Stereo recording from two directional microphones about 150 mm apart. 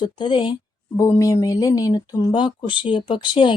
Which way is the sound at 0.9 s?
20° left (ahead or behind).